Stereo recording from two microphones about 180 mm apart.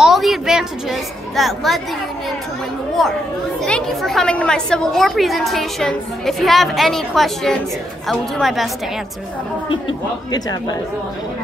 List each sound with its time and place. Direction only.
0.0 s a sound: centre (ahead or behind)
3.0 s a woman's voice: centre (ahead or behind)
10.3 s speech: 20° left (ahead or behind)